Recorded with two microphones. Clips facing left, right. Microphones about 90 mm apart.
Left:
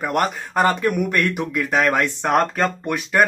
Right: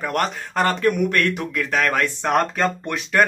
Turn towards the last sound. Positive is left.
turn(degrees=10)  # may be behind; listen again after turning